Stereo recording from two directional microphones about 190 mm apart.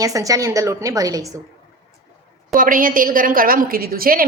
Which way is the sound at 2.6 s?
45° right (ahead or behind).